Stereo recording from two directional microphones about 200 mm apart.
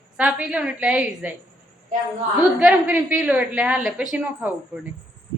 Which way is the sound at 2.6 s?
5° right (ahead or behind).